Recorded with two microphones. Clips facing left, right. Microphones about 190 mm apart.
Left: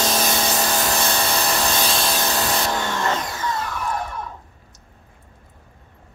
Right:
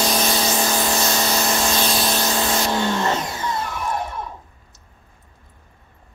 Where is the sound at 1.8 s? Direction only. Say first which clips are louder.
Right 2 dB; centre (ahead or behind).